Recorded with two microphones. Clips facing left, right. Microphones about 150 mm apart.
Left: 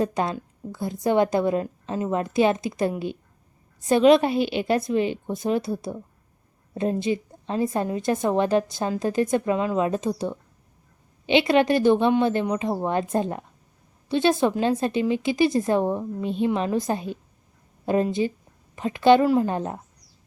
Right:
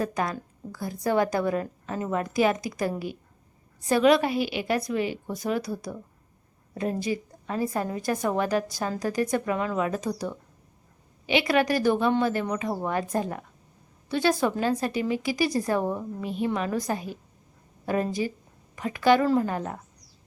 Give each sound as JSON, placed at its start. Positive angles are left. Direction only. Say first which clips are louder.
{"t": 0.0, "sound": "a woman's voice", "louder": "left 4 dB", "side_deg": 25}